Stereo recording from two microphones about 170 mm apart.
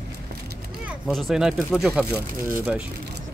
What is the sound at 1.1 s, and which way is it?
Speech, centre (ahead or behind).